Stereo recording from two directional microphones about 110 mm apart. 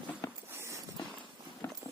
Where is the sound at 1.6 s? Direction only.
25° left (ahead or behind).